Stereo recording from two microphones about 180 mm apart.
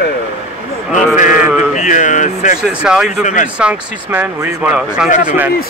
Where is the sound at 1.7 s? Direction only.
45° left (ahead or behind).